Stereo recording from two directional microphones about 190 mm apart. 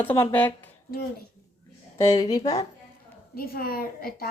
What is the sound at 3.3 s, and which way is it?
Speech, 50° left (ahead or behind).